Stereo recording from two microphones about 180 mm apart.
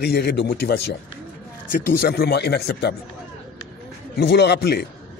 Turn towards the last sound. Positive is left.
turn(degrees=65)  # may be behind; listen again after turning